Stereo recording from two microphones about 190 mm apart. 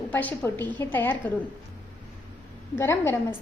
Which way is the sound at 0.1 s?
10° left (ahead or behind).